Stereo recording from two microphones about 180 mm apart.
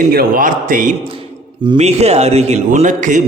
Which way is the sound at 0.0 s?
55° right (ahead or behind).